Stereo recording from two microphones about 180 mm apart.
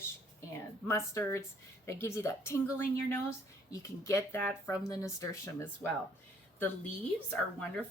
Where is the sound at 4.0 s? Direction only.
15° left (ahead or behind).